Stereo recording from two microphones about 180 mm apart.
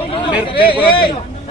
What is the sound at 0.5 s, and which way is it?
Speech, 30° left (ahead or behind).